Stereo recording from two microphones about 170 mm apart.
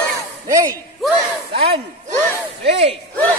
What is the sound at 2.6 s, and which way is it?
Speech, 35° right (ahead or behind).